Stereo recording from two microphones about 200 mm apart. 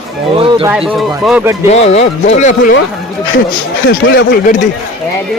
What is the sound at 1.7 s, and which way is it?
Speech, 35° left (ahead or behind).